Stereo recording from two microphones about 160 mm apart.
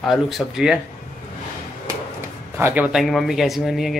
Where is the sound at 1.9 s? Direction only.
15° right (ahead or behind).